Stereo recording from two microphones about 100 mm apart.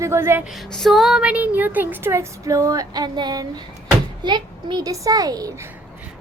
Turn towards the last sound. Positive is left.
turn(degrees=-40)  # may be behind; listen again after turning